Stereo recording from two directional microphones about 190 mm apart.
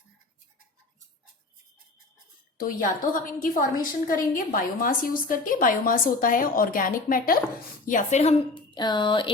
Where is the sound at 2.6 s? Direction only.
50° left (ahead or behind).